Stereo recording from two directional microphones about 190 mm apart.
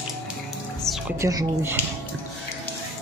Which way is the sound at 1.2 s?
15° right (ahead or behind).